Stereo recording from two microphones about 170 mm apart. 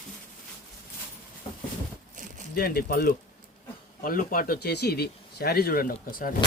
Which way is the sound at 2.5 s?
60° left (ahead or behind).